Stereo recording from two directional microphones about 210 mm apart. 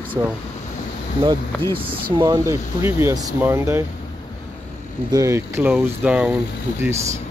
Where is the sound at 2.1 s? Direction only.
20° right (ahead or behind).